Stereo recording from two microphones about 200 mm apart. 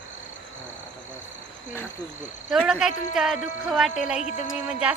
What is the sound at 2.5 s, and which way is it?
Speech, centre (ahead or behind).